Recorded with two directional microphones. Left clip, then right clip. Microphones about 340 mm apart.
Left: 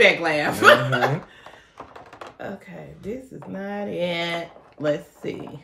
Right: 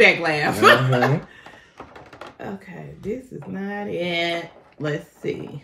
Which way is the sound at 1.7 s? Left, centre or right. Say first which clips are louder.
Even; centre.